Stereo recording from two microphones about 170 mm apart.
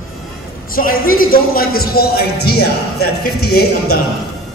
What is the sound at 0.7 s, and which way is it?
Speech, 55° left (ahead or behind).